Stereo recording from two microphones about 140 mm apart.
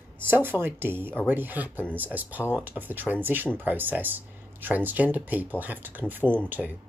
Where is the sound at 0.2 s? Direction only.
15° right (ahead or behind).